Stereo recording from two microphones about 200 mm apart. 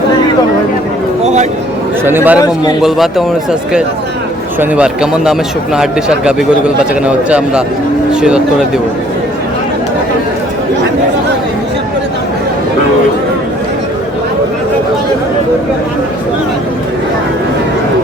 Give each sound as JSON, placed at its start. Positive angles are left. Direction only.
{"t": 1.2, "sound": "a sound", "side_deg": -35}
{"t": 2.0, "sound": "a man's voice", "side_deg": -10}
{"t": 4.6, "sound": "a man's voice", "side_deg": -5}